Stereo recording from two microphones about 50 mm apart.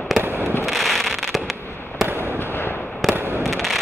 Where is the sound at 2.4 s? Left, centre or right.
Left.